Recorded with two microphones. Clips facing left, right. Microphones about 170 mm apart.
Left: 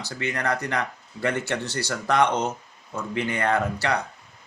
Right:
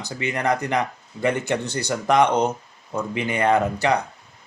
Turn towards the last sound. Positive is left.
turn(degrees=-15)  # may be behind; listen again after turning